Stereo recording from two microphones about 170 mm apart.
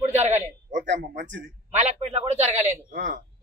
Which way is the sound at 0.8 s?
90° right.